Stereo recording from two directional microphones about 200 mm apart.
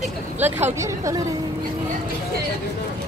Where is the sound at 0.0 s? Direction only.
10° right (ahead or behind).